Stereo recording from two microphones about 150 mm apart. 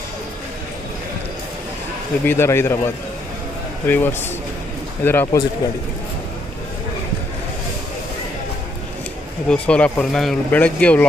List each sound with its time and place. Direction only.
2.2 s speech: 15° left (ahead or behind)
3.8 s speech: 10° left (ahead or behind)
9.5 s speech: 10° left (ahead or behind)